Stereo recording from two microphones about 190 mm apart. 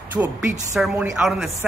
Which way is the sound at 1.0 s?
5° right (ahead or behind).